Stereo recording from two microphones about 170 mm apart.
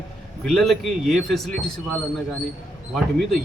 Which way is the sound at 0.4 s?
Centre (ahead or behind).